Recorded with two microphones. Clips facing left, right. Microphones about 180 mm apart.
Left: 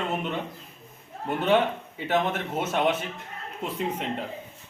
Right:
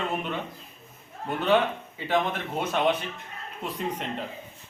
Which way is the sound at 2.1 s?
5° left (ahead or behind).